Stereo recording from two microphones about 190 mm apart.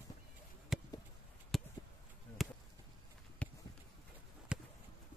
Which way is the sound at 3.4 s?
5° left (ahead or behind).